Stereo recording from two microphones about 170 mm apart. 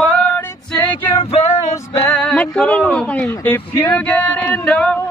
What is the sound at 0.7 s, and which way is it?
Female singing, 20° left (ahead or behind).